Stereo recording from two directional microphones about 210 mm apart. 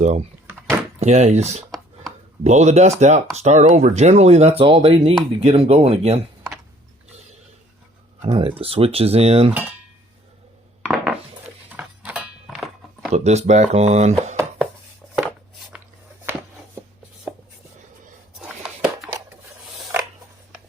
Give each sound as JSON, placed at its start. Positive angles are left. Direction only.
{"t": 0.0, "sound": "speech", "side_deg": -35}
{"t": 8.3, "sound": "speech", "side_deg": -25}
{"t": 10.8, "sound": "dishes", "side_deg": 0}
{"t": 11.7, "sound": "music", "side_deg": -5}
{"t": 13.1, "sound": "speech", "side_deg": -35}
{"t": 15.0, "sound": "a sound", "side_deg": 0}
{"t": 18.3, "sound": "a sound", "side_deg": -5}